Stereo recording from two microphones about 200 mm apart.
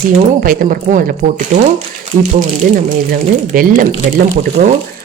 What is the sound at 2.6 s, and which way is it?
Speech, 40° right (ahead or behind).